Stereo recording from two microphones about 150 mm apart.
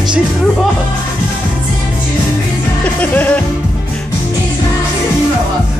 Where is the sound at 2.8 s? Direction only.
10° left (ahead or behind).